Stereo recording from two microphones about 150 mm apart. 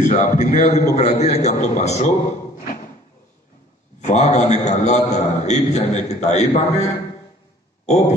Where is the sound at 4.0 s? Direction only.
50° left (ahead or behind).